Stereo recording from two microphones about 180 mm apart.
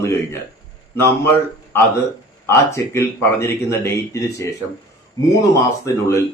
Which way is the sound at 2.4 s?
15° left (ahead or behind).